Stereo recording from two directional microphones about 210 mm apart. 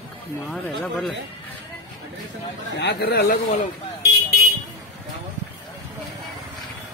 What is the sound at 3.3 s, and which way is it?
Speech, 35° left (ahead or behind).